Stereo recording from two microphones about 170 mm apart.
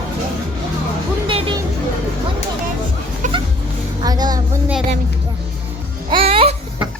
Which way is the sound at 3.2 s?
45° right (ahead or behind).